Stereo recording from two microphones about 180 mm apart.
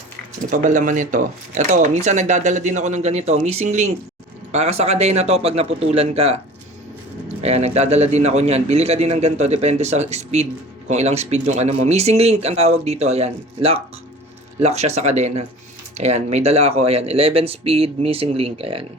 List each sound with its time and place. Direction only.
0.5 s speech: 45° right (ahead or behind)
7.4 s speech: 35° right (ahead or behind)